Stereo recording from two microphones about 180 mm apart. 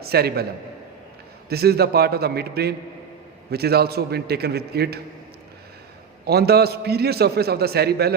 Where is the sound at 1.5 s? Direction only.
60° right (ahead or behind).